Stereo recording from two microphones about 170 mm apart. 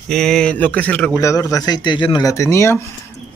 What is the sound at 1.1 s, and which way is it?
Speech, 20° left (ahead or behind).